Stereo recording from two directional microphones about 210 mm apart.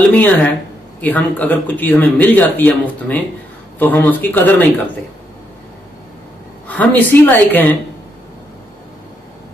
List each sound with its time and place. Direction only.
0.1 s speech: 5° left (ahead or behind)
6.7 s speech: 5° left (ahead or behind)